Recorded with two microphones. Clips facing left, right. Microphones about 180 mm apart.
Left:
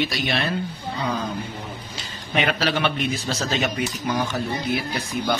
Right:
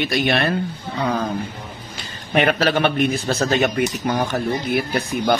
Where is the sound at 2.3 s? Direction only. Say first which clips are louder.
Right 5 dB; 50° right (ahead or behind).